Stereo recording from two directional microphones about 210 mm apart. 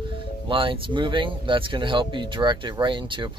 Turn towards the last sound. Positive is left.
turn(degrees=-25)  # may be behind; listen again after turning